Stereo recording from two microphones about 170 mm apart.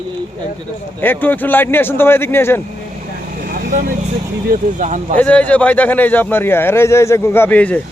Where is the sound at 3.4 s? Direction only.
55° right (ahead or behind).